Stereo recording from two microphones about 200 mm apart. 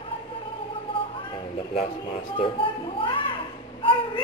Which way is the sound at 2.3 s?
25° left (ahead or behind).